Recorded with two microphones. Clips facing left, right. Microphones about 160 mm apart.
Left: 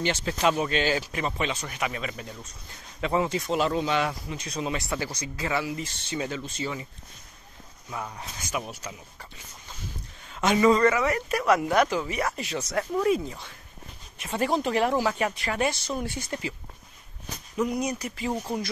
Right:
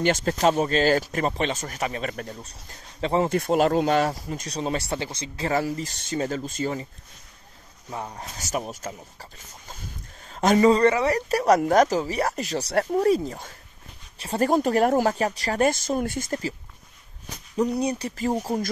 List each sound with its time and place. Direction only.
0.0 s speech: 50° right (ahead or behind)
2.1 s speech: 55° right (ahead or behind)
3.0 s speech: 30° right (ahead or behind)
3.3 s speech: 55° right (ahead or behind); by 5.5 s 25° right (ahead or behind)
5.5 s speech: 40° right (ahead or behind)
7.9 s speech: 35° right (ahead or behind)
17.6 s speech: 35° right (ahead or behind)